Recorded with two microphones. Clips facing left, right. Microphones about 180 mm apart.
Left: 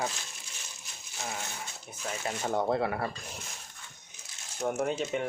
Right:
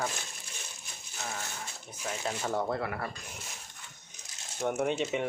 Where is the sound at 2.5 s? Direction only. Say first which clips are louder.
Left 5 dB; 25° left (ahead or behind).